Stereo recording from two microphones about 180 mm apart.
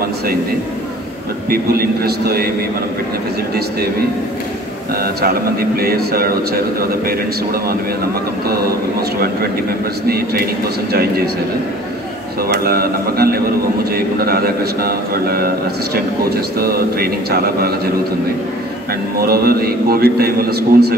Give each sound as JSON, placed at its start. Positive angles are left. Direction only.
{"t": 1.5, "sound": "speech", "side_deg": -55}
{"t": 4.9, "sound": "speech", "side_deg": -55}
{"t": 10.0, "sound": "speech", "side_deg": -55}
{"t": 12.4, "sound": "speech", "side_deg": -55}
{"t": 19.2, "sound": "speech", "side_deg": -55}